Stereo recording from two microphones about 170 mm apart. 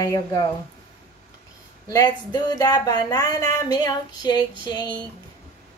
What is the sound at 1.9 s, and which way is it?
Speech, 25° left (ahead or behind).